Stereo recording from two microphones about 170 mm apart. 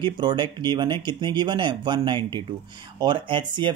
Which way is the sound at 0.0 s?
25° right (ahead or behind).